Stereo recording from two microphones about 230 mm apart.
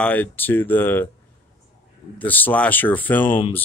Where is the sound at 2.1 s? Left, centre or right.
Centre.